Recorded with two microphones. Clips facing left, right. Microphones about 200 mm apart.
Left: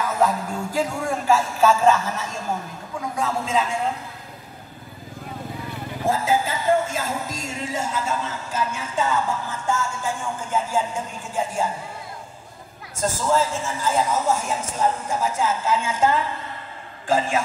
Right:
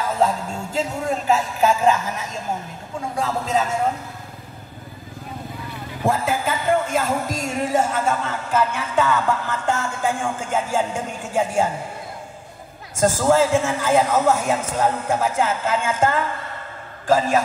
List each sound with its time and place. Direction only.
0.0 s speech: 30° right (ahead or behind)
3.2 s a man's voice: 40° right (ahead or behind)
6.0 s a man's voice: 60° right (ahead or behind)
13.3 s a man's voice: 75° right (ahead or behind); by 16.3 s 50° right (ahead or behind)